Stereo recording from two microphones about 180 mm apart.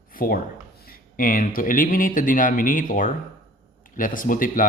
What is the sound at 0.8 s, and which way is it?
Speech, 55° left (ahead or behind).